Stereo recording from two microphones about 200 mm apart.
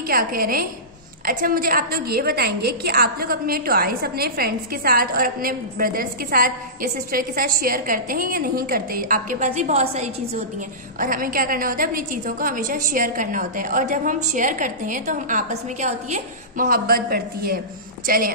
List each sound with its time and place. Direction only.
0.1 s a woman's voice: 45° right (ahead or behind)